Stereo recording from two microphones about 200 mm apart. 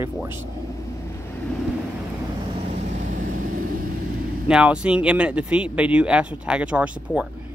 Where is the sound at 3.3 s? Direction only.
45° right (ahead or behind).